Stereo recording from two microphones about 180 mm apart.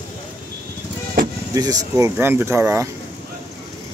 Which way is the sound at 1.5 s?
20° right (ahead or behind).